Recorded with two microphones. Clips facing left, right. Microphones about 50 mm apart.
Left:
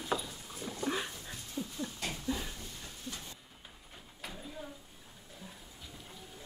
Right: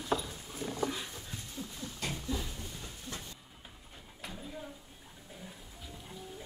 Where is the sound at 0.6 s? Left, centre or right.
Centre.